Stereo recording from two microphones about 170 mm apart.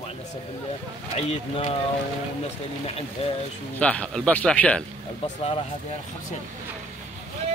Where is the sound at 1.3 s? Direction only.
40° left (ahead or behind).